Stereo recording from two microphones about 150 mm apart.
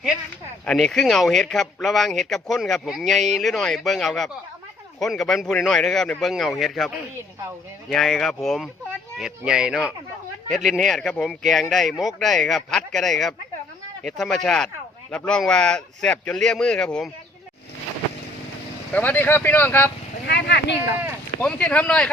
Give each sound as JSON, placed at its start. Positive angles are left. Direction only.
{"t": 0.6, "sound": "speech", "side_deg": 5}
{"t": 18.9, "sound": "speech", "side_deg": 10}
{"t": 20.2, "sound": "speech", "side_deg": 90}
{"t": 21.4, "sound": "speech", "side_deg": 10}